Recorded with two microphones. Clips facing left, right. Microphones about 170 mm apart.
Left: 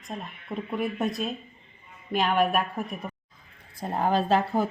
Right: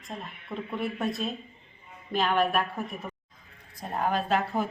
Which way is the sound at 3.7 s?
30° left (ahead or behind).